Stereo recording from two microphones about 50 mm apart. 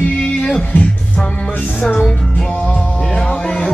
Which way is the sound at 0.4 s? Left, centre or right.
Centre.